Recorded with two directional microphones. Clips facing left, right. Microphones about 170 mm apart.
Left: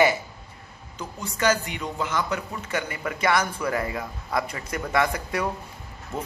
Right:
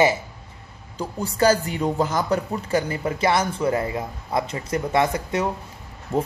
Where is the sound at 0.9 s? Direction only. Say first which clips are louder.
Right 8 dB; 35° right (ahead or behind).